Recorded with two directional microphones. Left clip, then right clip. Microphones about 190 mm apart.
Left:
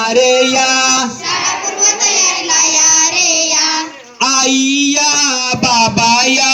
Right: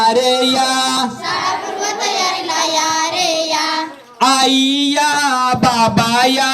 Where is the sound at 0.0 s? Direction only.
15° left (ahead or behind).